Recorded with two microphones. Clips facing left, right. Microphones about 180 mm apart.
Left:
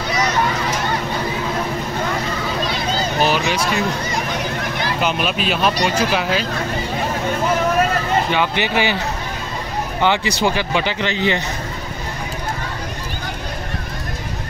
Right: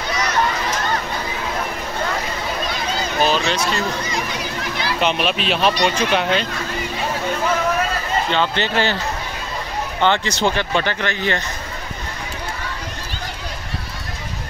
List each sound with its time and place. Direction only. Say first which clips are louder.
3.2 s a sound: right 1 dB; 15° left (ahead or behind)
4.3 s children playing: left 3 dB; 50° left (ahead or behind)
5.0 s speech: right 2 dB; centre (ahead or behind)
8.3 s speech: left 1 dB; 10° left (ahead or behind)
10.0 s speech: even; 10° left (ahead or behind)